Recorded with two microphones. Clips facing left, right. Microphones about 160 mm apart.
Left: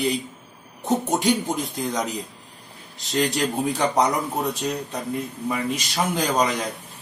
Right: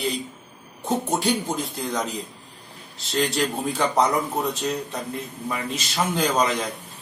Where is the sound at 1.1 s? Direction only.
15° left (ahead or behind).